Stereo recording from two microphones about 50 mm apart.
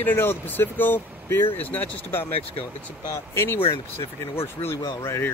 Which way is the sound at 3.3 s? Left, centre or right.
Left.